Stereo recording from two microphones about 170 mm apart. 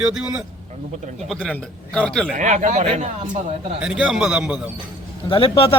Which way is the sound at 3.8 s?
5° right (ahead or behind).